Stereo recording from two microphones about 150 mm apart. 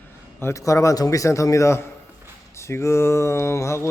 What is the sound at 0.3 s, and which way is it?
A man's voice, 20° left (ahead or behind).